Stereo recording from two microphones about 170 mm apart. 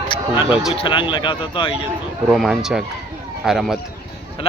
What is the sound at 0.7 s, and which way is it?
Speech, 30° left (ahead or behind).